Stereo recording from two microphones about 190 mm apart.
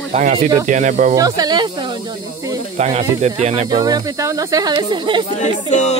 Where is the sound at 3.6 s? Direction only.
20° right (ahead or behind).